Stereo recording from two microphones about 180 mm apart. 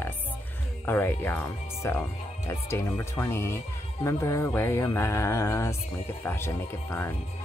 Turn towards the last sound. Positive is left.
turn(degrees=15)  # may be behind; listen again after turning